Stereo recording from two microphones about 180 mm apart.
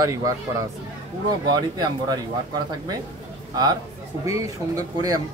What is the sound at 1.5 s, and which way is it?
Speech, 20° right (ahead or behind).